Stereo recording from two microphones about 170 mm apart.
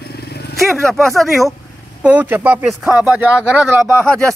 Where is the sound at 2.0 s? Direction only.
10° right (ahead or behind).